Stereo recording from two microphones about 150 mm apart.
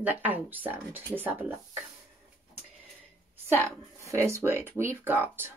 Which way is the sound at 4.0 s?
20° right (ahead or behind).